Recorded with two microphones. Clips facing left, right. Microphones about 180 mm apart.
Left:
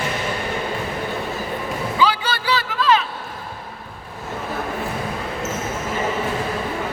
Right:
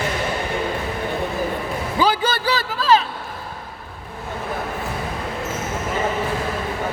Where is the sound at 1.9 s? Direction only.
45° right (ahead or behind).